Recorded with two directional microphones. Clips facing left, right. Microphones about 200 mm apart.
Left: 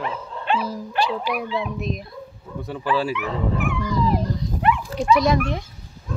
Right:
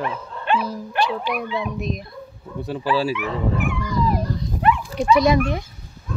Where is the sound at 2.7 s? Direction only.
10° right (ahead or behind).